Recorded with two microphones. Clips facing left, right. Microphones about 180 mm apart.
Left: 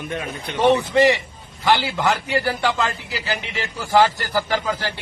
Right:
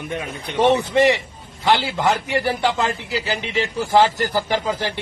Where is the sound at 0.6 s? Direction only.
20° right (ahead or behind).